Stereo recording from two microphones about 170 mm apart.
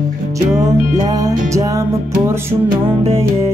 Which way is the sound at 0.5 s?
20° right (ahead or behind).